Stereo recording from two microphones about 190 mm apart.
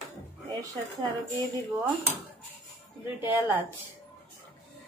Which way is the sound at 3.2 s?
10° right (ahead or behind).